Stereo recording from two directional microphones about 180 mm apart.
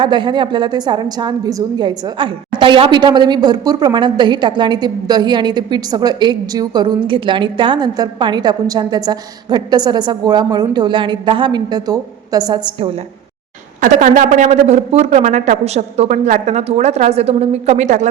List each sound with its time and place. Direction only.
0.0 s a woman's voice: 25° right (ahead or behind)
13.8 s a woman's voice: 45° right (ahead or behind)